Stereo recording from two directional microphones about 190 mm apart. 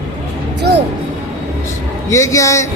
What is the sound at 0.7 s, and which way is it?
Speech, 60° right (ahead or behind).